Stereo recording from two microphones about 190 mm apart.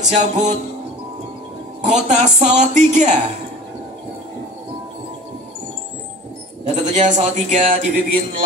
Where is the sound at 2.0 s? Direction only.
40° right (ahead or behind).